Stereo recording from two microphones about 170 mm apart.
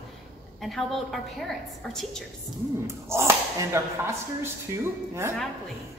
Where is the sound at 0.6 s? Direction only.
Centre (ahead or behind).